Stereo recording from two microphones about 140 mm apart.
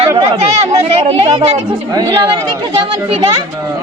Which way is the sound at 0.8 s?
45° right (ahead or behind).